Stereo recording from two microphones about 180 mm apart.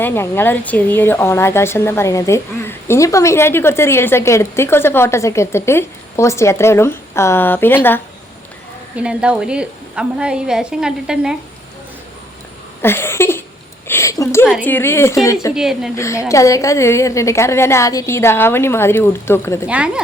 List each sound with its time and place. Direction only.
0.0 s a woman's voice: 15° left (ahead or behind)
9.0 s a woman's voice: 5° right (ahead or behind)
12.8 s a woman's voice: 15° left (ahead or behind)
15.5 s a woman's voice: 5° right (ahead or behind)
16.0 s a woman's voice: 15° left (ahead or behind)
19.6 s a woman's voice: 5° right (ahead or behind)